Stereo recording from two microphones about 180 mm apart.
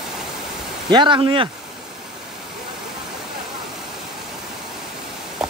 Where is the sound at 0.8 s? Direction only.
25° right (ahead or behind).